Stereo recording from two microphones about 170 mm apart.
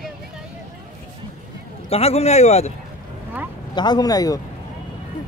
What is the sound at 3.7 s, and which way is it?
Speech, 25° left (ahead or behind).